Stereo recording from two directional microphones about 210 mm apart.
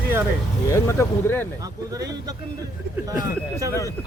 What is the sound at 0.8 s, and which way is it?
Speech, 10° left (ahead or behind).